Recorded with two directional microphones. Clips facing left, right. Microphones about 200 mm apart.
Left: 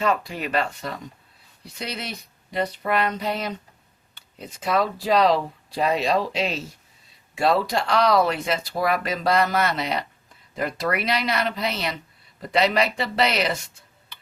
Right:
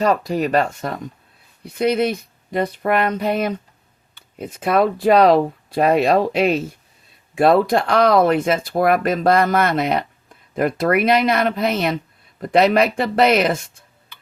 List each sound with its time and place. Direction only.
0.0 s speech: 40° right (ahead or behind)